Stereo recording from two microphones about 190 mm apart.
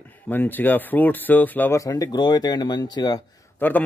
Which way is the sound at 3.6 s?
10° left (ahead or behind).